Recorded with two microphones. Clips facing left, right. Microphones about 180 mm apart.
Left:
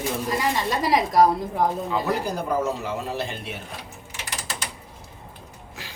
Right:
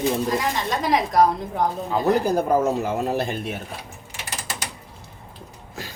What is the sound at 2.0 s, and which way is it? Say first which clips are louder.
Speech: right 6 dB; 50° right (ahead or behind).